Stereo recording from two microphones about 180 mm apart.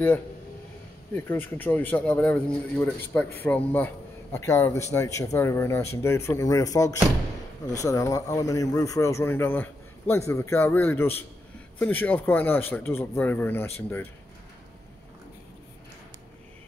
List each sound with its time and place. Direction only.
1.1 s speech: 10° left (ahead or behind)